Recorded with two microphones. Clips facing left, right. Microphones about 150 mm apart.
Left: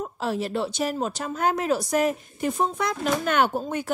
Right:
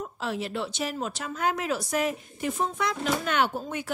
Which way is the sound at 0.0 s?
40° left (ahead or behind).